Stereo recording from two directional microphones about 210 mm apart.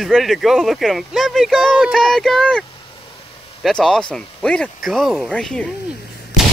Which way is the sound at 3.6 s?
5° left (ahead or behind).